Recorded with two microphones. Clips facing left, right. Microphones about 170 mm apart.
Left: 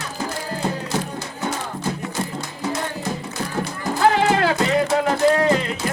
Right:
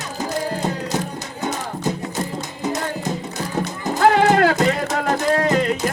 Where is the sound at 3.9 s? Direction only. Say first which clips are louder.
Right 3 dB; 50° right (ahead or behind).